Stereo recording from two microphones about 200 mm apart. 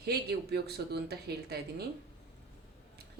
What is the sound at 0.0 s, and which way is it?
Speech, 55° right (ahead or behind).